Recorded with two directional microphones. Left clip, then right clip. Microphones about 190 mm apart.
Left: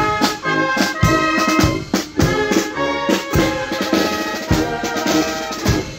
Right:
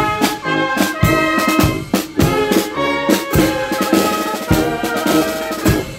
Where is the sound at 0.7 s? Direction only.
20° right (ahead or behind); by 2.7 s 40° right (ahead or behind).